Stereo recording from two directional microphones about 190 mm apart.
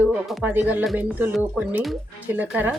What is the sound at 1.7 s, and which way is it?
Speech, 10° right (ahead or behind).